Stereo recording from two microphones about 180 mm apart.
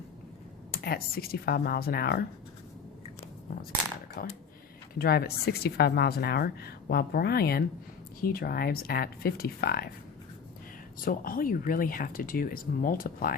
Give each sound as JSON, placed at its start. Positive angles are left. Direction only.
{"t": 0.7, "sound": "speech", "side_deg": 60}
{"t": 4.2, "sound": "speech", "side_deg": 55}
{"t": 11.0, "sound": "speech", "side_deg": 50}